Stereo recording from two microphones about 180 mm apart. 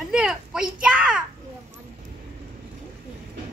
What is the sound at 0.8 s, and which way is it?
Speech, 5° right (ahead or behind).